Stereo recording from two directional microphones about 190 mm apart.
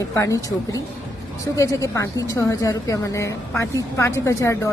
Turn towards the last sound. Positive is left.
turn(degrees=15)  # may be behind; listen again after turning